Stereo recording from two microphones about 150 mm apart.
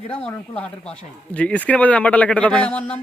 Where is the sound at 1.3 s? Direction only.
10° left (ahead or behind).